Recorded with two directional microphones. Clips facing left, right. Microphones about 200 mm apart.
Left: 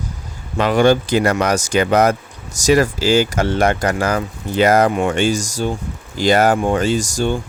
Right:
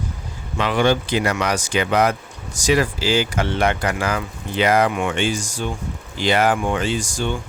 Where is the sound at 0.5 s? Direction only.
45° left (ahead or behind).